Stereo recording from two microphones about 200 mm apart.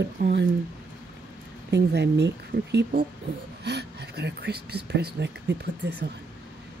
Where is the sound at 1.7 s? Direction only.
55° right (ahead or behind).